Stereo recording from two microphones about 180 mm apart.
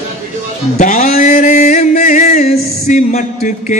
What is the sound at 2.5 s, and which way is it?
Speech, 45° left (ahead or behind).